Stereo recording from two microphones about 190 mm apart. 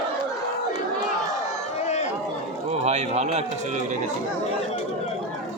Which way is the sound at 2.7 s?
35° right (ahead or behind).